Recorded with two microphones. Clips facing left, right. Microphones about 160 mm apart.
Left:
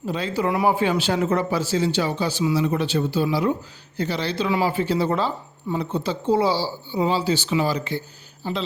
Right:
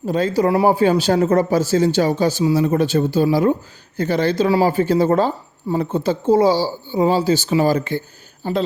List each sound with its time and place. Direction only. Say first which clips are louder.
0.0 s speech: right 7 dB; 45° right (ahead or behind)